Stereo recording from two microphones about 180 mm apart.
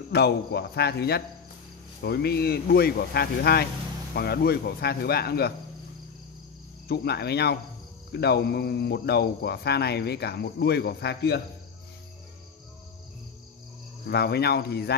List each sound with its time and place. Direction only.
0.1 s speech: 65° left (ahead or behind)
6.9 s speech: 65° left (ahead or behind)
14.0 s speech: 65° left (ahead or behind)